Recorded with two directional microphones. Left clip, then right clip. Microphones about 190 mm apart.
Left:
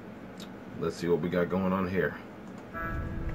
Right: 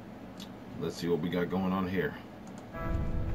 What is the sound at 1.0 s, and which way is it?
Speech, 15° left (ahead or behind).